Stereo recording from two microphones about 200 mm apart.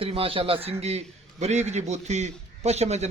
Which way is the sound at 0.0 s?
30° right (ahead or behind).